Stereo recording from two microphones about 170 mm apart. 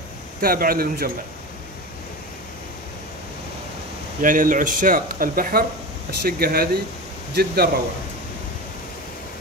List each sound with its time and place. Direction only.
0.4 s speech: 60° right (ahead or behind)
4.2 s speech: 50° right (ahead or behind)